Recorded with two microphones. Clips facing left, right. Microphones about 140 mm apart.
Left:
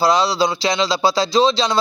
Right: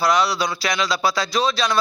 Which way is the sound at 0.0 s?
25° left (ahead or behind).